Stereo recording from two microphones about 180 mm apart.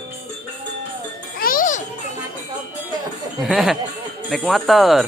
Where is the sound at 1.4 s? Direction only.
50° left (ahead or behind).